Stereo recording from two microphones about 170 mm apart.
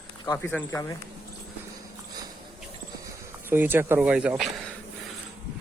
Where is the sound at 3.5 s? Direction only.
10° right (ahead or behind).